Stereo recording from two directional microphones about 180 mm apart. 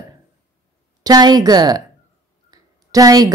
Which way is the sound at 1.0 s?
20° right (ahead or behind).